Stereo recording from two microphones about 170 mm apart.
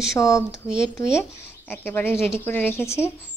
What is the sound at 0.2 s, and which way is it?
Speech, 15° left (ahead or behind).